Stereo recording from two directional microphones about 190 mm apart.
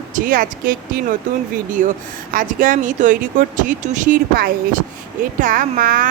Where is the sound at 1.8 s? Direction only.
40° right (ahead or behind).